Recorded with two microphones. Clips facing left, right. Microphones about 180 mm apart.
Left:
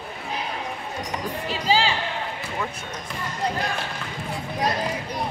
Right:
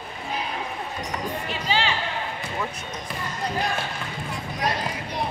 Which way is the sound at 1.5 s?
35° left (ahead or behind).